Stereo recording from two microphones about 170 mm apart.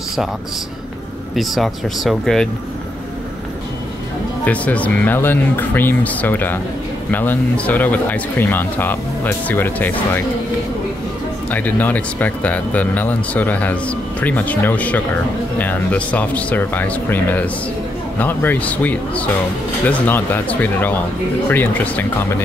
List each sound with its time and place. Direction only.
1.3 s speech: centre (ahead or behind)
4.5 s speech: 10° left (ahead or behind)
11.5 s speech: 10° left (ahead or behind)